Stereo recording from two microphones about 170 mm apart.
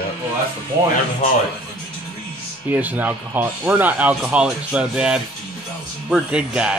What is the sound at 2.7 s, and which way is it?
Speech, 10° right (ahead or behind).